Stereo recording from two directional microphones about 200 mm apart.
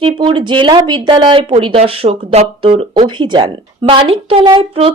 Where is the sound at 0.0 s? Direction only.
25° right (ahead or behind).